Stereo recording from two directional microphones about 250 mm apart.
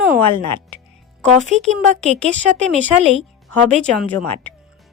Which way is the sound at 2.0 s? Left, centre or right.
Right.